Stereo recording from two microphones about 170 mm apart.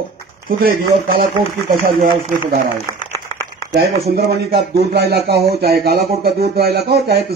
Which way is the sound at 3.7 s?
70° right (ahead or behind).